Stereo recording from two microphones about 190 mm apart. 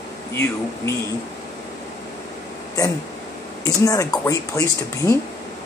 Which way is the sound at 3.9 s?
20° left (ahead or behind).